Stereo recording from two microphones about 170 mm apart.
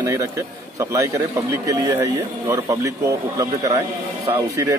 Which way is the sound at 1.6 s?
15° right (ahead or behind).